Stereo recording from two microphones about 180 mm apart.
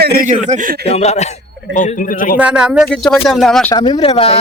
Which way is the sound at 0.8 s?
35° left (ahead or behind).